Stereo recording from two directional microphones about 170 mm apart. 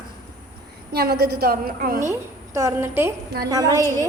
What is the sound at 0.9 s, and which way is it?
A woman's voice, 65° right (ahead or behind).